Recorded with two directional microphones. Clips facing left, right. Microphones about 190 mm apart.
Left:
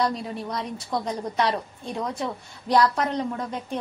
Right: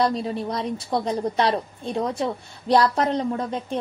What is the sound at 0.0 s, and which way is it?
A woman's voice, 30° right (ahead or behind).